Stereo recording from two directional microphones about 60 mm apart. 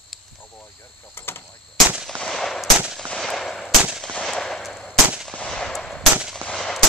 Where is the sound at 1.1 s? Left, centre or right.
Left.